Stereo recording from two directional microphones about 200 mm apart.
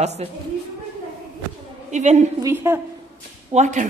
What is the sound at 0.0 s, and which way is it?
Speech, 35° right (ahead or behind).